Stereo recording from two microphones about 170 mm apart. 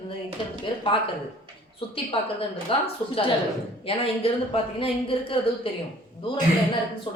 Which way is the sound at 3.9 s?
35° left (ahead or behind).